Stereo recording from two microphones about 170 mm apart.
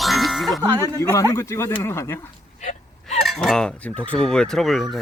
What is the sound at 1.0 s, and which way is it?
Speech, 15° left (ahead or behind).